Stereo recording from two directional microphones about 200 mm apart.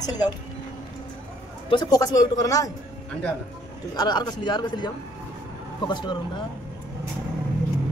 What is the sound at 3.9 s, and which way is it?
A man's voice, 20° left (ahead or behind).